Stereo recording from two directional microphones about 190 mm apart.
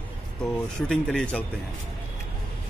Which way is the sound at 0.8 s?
5° left (ahead or behind).